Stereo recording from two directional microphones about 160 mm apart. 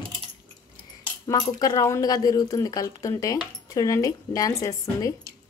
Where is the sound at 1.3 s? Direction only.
25° left (ahead or behind).